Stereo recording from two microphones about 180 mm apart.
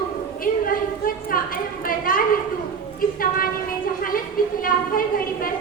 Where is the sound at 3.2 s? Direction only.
50° left (ahead or behind).